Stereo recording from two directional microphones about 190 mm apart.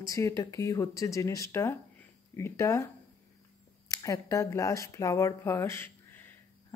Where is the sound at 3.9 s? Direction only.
15° left (ahead or behind).